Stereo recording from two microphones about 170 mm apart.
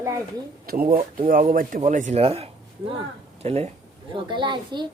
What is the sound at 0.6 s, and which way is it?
Speech, 60° right (ahead or behind).